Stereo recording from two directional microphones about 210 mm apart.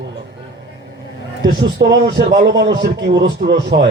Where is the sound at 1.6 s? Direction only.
55° right (ahead or behind).